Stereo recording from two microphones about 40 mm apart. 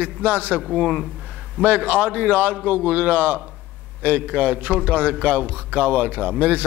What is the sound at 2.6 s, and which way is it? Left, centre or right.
A man's voice, right.